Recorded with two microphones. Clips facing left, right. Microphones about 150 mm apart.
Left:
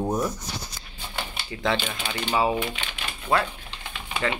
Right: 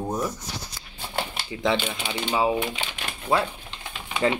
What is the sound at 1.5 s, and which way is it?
Speech, 20° right (ahead or behind).